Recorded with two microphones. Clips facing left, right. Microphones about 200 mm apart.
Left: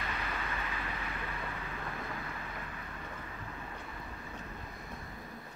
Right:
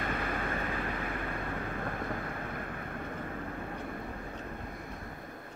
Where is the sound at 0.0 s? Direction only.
50° right (ahead or behind).